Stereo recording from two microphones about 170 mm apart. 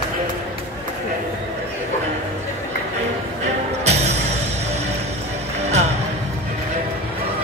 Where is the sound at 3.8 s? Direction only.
40° right (ahead or behind).